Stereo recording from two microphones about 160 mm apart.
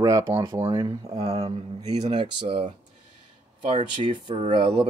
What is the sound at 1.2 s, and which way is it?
Speech, 40° right (ahead or behind).